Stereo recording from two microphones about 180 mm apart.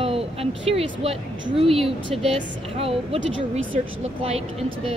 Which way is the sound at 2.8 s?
35° right (ahead or behind).